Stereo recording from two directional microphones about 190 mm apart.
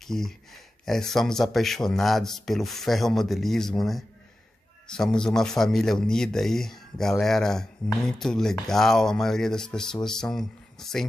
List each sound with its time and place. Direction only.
0.0 s speech: centre (ahead or behind)